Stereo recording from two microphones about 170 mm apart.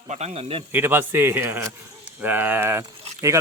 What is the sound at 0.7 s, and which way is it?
Speech, 15° right (ahead or behind).